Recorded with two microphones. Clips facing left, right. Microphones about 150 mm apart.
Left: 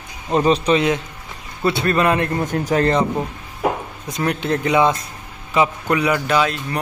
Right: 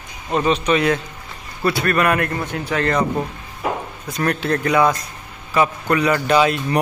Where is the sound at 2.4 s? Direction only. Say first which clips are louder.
Left 4 dB; 45° left (ahead or behind).